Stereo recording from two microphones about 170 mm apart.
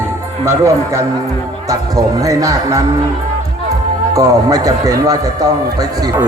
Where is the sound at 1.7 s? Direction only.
20° right (ahead or behind).